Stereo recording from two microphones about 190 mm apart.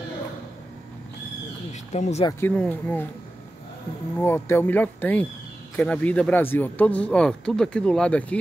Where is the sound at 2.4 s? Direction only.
10° left (ahead or behind).